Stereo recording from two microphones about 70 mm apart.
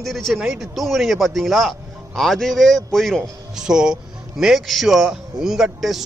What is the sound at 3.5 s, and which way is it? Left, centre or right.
A man's voice, centre.